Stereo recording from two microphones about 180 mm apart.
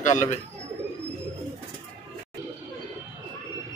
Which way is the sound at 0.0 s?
45° left (ahead or behind).